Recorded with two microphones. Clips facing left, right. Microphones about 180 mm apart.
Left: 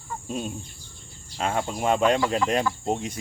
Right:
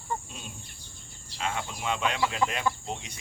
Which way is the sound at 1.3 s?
50° left (ahead or behind).